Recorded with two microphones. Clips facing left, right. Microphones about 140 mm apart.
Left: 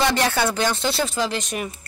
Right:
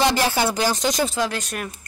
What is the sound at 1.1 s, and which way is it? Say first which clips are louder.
Speech: even; 5° left (ahead or behind).